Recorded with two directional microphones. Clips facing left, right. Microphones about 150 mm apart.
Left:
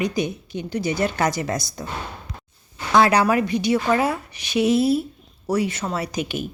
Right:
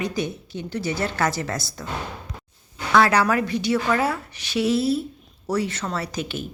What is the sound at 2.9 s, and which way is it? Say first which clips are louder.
Speech: left 2 dB; 15° left (ahead or behind).